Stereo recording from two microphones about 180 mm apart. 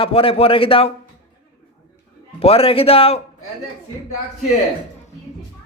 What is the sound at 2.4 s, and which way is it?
Speech, 35° left (ahead or behind).